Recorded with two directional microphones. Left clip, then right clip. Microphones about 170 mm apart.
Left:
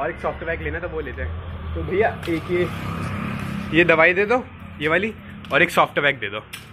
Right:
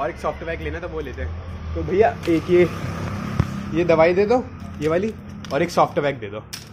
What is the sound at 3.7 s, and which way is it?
Speech, 5° right (ahead or behind).